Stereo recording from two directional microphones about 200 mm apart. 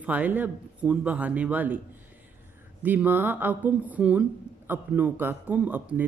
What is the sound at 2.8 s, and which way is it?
A man's voice, 10° right (ahead or behind).